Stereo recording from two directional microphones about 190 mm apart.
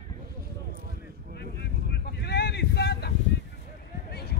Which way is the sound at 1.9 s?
60° left (ahead or behind).